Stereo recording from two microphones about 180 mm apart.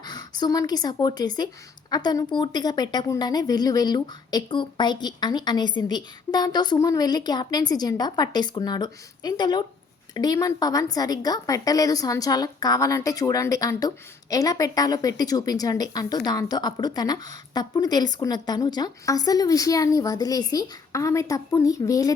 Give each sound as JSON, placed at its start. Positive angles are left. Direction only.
{"t": 0.0, "sound": "speech", "side_deg": 20}